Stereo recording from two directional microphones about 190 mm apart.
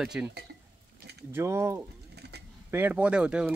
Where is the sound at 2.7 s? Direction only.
10° right (ahead or behind).